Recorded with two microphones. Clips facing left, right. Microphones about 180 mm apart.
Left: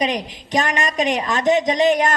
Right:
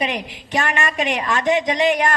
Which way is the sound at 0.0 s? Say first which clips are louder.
Left 2 dB; 20° left (ahead or behind).